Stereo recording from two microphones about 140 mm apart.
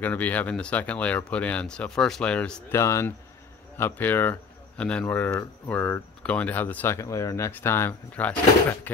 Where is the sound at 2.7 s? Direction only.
20° left (ahead or behind).